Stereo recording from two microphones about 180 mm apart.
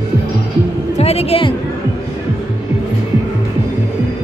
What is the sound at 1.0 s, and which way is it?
Speech, 35° left (ahead or behind).